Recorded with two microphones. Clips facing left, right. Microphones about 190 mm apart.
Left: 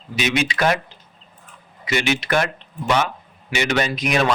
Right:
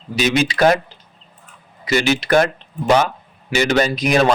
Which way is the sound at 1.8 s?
35° right (ahead or behind).